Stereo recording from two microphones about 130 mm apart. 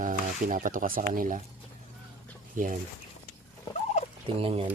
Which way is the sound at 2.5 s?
90° right.